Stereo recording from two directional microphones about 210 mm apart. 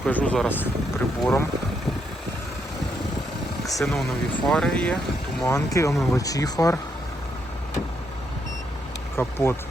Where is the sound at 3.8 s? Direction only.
Centre (ahead or behind); by 6.8 s 15° left (ahead or behind).